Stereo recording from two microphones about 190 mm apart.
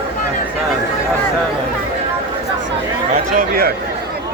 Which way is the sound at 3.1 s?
50° right (ahead or behind).